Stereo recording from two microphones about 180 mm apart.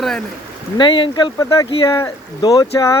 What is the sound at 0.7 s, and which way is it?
Speech, 25° left (ahead or behind).